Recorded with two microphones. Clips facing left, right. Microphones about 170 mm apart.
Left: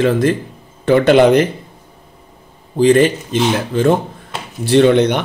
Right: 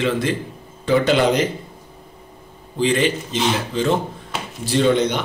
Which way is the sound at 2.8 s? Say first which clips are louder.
Left 8 dB; 45° left (ahead or behind).